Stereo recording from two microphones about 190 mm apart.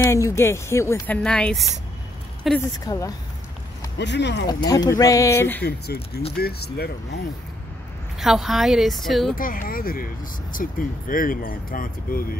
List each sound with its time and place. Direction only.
0.0 s a woman's voice: 15° left (ahead or behind); by 2.6 s centre (ahead or behind)
2.8 s speech: 20° left (ahead or behind)
4.0 s speech: 65° left (ahead or behind)
4.5 s speech: 20° left (ahead or behind)
5.6 s speech: 60° left (ahead or behind)
8.2 s a woman's voice: centre (ahead or behind)
9.3 s speech: 50° left (ahead or behind)